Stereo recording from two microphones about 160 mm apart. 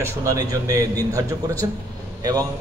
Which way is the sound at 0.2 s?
20° right (ahead or behind).